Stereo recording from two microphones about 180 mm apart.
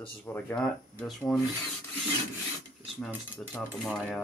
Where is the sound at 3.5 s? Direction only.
Centre (ahead or behind).